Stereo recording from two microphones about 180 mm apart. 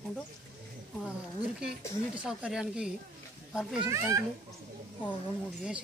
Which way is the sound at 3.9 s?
15° right (ahead or behind).